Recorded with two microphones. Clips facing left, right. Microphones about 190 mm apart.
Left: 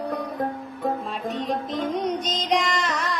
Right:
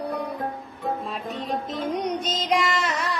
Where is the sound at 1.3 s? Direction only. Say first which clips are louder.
Left 3 dB; 40° left (ahead or behind).